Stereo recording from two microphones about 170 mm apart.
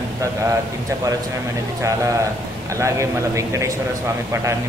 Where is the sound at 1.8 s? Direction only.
20° right (ahead or behind).